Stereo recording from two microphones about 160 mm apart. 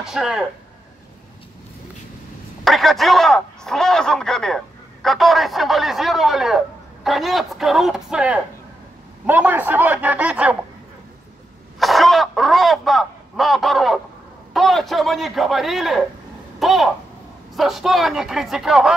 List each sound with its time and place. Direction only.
0.0 s a man's voice: 5° right (ahead or behind)
2.6 s a man's voice: centre (ahead or behind)
11.8 s a man's voice: centre (ahead or behind)